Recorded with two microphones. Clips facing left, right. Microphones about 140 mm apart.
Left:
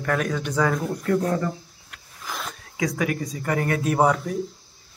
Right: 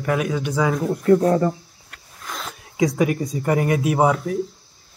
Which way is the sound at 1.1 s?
30° right (ahead or behind).